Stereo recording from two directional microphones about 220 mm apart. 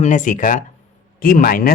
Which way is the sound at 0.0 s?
35° left (ahead or behind).